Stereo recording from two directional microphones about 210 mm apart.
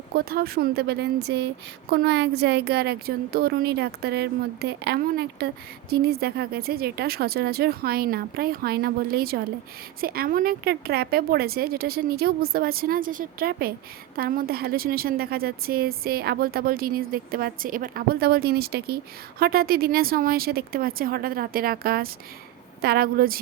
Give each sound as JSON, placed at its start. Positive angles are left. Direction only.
{"t": 0.2, "sound": "a woman's voice", "side_deg": -45}